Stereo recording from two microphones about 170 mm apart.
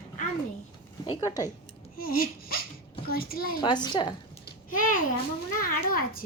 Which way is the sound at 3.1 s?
60° left (ahead or behind).